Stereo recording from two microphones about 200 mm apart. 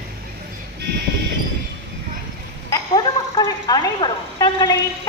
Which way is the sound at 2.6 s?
20° left (ahead or behind).